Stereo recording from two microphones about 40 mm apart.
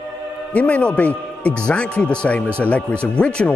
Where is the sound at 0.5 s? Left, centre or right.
Left.